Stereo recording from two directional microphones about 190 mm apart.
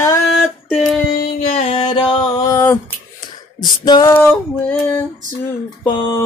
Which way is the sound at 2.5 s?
15° left (ahead or behind).